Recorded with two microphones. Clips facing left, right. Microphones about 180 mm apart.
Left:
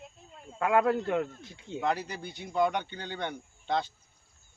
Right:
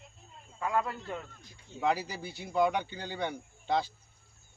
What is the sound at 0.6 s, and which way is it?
Speech, 75° left (ahead or behind).